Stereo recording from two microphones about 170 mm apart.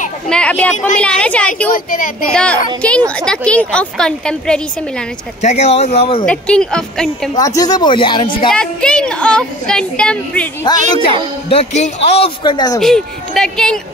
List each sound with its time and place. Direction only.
0.3 s a woman's voice: 5° left (ahead or behind)
1.7 s speech: 55° left (ahead or behind)
2.3 s a woman's voice: 5° left (ahead or behind)
5.4 s speech: 40° left (ahead or behind)
6.2 s a woman's voice: 5° left (ahead or behind)
7.3 s speech: 20° left (ahead or behind)
8.5 s a woman's voice: 5° left (ahead or behind)
11.4 s speech: 40° left (ahead or behind)
12.8 s a woman's voice: 5° left (ahead or behind)